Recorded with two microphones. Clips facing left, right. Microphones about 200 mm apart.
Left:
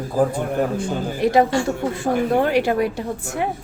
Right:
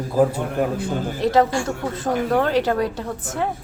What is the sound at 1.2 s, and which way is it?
A woman's voice, 15° left (ahead or behind).